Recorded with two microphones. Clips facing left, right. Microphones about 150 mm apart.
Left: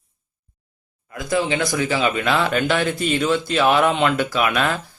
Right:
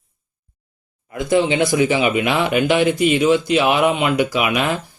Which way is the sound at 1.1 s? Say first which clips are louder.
Right 5 dB; 25° right (ahead or behind).